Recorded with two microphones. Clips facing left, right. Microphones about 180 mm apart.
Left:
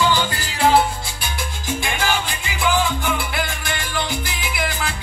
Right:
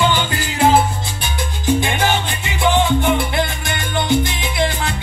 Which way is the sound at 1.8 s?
20° right (ahead or behind).